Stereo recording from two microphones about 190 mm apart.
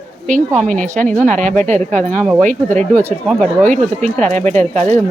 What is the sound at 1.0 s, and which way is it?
Speech, 5° left (ahead or behind).